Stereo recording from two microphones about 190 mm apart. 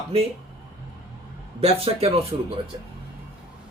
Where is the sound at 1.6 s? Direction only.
30° right (ahead or behind).